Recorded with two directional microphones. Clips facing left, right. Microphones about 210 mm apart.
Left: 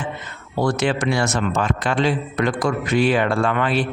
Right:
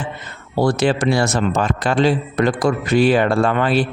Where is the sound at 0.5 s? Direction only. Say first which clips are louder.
Right 3 dB; 35° right (ahead or behind).